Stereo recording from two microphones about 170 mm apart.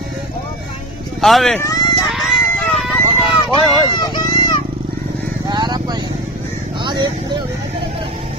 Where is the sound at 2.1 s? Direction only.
Centre (ahead or behind).